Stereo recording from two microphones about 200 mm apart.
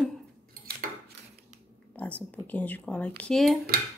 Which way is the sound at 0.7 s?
50° right (ahead or behind).